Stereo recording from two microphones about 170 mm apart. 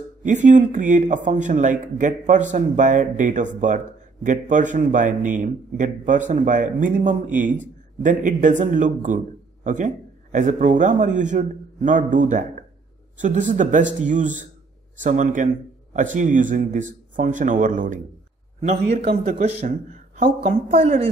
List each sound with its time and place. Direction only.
0.2 s speech: 45° right (ahead or behind)
19.4 s speech: 45° right (ahead or behind)